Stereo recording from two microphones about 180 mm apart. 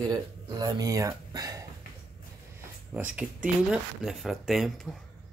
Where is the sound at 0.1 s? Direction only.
20° right (ahead or behind).